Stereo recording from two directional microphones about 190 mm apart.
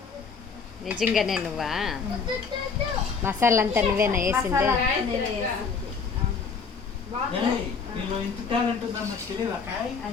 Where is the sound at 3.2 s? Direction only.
10° right (ahead or behind).